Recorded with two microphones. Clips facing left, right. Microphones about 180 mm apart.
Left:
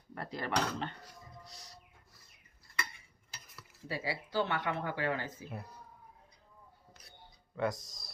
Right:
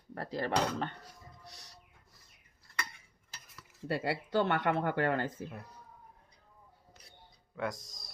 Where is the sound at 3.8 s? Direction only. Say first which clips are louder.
Right 5 dB; 65° right (ahead or behind).